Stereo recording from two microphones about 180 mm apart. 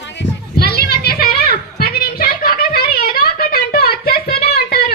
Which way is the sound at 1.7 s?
55° left (ahead or behind).